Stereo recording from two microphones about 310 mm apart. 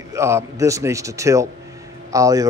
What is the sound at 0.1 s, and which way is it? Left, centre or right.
A man's voice, centre.